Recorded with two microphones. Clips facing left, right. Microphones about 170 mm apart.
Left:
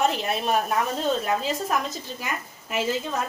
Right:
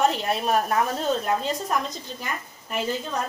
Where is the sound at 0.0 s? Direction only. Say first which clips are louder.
Right 1 dB; centre (ahead or behind).